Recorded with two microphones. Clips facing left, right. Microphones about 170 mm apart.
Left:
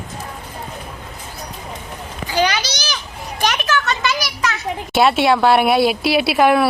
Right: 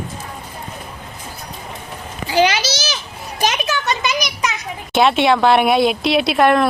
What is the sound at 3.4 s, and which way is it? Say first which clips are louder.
Children playing: even; 20° right (ahead or behind).